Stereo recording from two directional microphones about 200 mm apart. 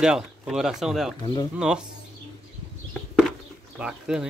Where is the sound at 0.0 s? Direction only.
5° right (ahead or behind).